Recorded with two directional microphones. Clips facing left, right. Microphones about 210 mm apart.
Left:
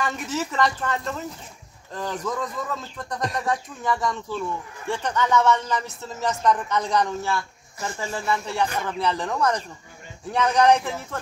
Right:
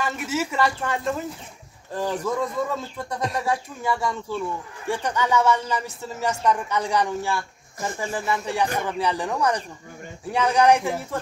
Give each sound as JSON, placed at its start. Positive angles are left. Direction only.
{"t": 0.0, "sound": "speech", "side_deg": -5}
{"t": 2.2, "sound": "speech", "side_deg": -10}